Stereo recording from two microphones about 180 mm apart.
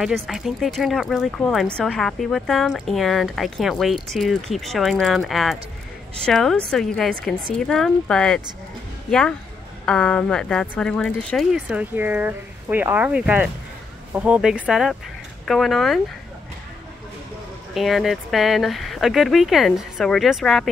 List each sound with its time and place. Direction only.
0.0 s speech: centre (ahead or behind)
9.8 s speech: 5° left (ahead or behind)
11.5 s speech: 10° right (ahead or behind)
17.7 s speech: centre (ahead or behind)